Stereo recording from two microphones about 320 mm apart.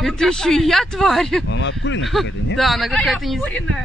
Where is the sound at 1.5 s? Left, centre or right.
Left.